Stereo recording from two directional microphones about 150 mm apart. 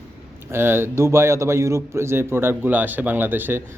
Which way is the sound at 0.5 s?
15° right (ahead or behind).